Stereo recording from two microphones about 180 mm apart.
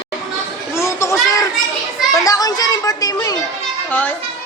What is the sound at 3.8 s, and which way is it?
Speech, 10° left (ahead or behind).